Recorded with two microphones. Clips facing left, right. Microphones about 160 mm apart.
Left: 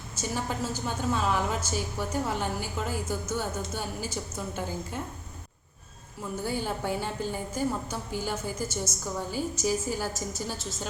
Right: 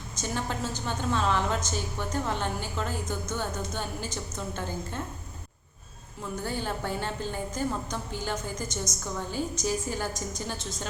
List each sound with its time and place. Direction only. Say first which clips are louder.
0.2 s a woman's voice: left 1 dB; 10° left (ahead or behind)
6.4 s a woman's voice: left 2 dB; 10° left (ahead or behind)